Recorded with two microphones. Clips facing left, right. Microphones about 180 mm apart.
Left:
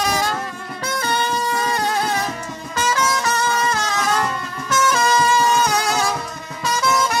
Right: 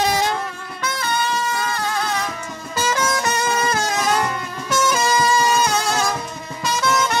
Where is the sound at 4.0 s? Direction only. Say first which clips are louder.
Right 1 dB; 10° right (ahead or behind).